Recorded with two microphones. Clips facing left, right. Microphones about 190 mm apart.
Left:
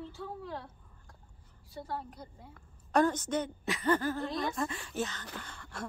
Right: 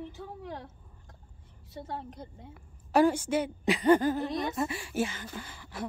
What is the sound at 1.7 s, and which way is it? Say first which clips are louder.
Speech: right 1 dB; 20° right (ahead or behind).